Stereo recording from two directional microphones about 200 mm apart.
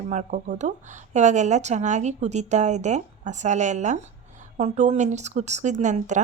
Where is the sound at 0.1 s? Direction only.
40° right (ahead or behind).